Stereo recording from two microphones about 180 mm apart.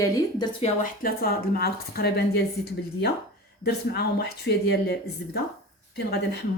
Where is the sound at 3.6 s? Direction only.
65° left (ahead or behind).